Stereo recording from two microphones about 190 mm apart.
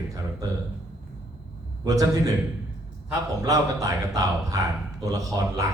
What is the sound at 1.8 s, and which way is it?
Speech, 20° right (ahead or behind).